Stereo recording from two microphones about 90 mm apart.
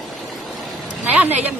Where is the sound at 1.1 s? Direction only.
15° right (ahead or behind).